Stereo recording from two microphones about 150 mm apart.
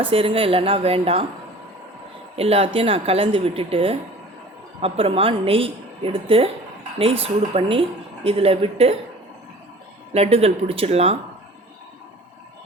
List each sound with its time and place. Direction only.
0.0 s speech: 35° right (ahead or behind)
2.3 s speech: 40° right (ahead or behind)
10.1 s speech: 45° right (ahead or behind)